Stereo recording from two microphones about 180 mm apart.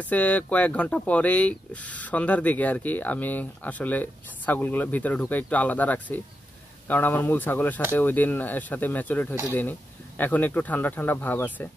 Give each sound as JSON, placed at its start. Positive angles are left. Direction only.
{"t": 0.0, "sound": "speech", "side_deg": 10}